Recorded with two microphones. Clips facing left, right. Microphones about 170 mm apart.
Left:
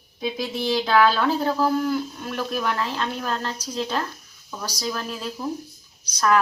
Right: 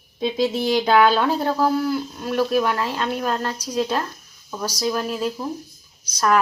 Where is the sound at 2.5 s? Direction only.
10° right (ahead or behind).